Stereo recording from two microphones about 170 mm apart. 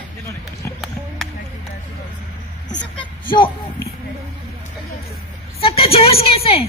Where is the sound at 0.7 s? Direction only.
Centre (ahead or behind).